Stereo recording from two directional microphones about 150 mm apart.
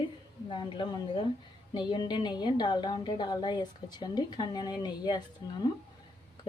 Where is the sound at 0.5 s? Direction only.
30° left (ahead or behind).